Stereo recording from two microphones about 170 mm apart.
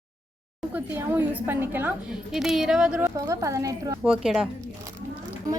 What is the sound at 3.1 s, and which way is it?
Speech, 20° right (ahead or behind).